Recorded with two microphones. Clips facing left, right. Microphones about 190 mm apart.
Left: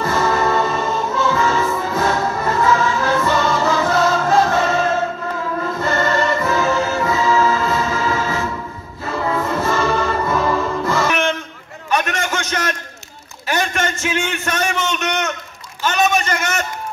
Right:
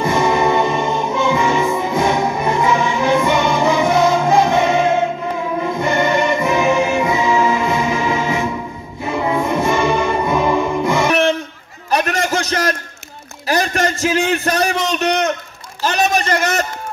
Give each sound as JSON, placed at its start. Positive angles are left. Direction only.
{"t": 0.0, "sound": "music", "side_deg": -15}
{"t": 11.1, "sound": "music", "side_deg": -35}
{"t": 11.9, "sound": "a sound", "side_deg": -35}